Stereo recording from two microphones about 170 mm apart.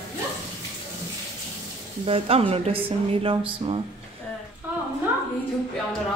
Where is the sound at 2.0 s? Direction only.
35° right (ahead or behind).